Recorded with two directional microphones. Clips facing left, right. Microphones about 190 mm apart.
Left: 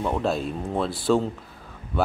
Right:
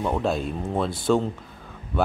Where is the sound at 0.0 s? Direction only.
Centre (ahead or behind).